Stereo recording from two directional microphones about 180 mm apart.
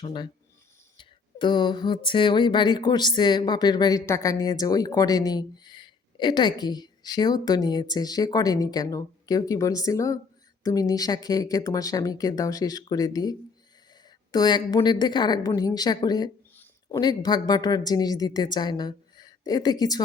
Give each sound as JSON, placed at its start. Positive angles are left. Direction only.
{"t": 0.0, "sound": "a woman's voice", "side_deg": 25}